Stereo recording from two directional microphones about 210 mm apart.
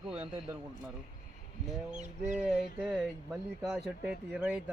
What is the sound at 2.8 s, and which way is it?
Speech, centre (ahead or behind).